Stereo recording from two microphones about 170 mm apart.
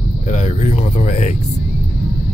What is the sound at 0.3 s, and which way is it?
Speech, 45° left (ahead or behind).